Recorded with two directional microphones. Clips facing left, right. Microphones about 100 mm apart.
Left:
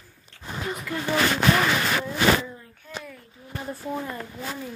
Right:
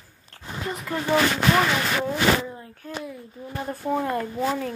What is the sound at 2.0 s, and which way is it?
Speech, 50° right (ahead or behind).